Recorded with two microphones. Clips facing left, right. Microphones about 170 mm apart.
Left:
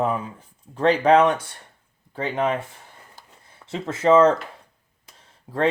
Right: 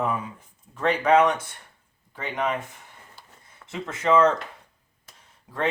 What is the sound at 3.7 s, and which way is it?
Speech, 30° left (ahead or behind).